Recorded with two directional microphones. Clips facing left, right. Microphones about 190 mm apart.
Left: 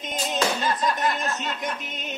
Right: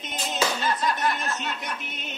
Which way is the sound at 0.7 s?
15° left (ahead or behind).